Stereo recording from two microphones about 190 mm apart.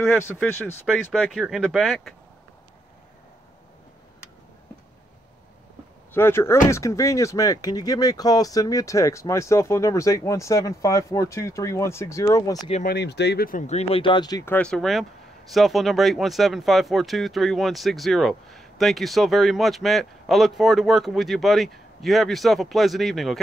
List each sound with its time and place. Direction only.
0.2 s speech: 10° left (ahead or behind)
0.8 s speech: centre (ahead or behind)
6.1 s speech: 10° left (ahead or behind)
12.8 s speech: 60° left (ahead or behind); by 23.4 s centre (ahead or behind)